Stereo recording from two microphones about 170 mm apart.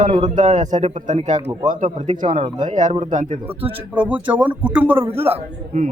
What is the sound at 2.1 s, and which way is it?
Speech, 30° right (ahead or behind).